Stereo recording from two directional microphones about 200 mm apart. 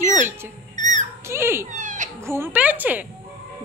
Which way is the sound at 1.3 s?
10° right (ahead or behind).